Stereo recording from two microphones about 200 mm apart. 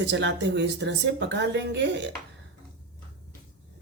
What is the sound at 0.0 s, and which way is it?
Speech, 60° right (ahead or behind).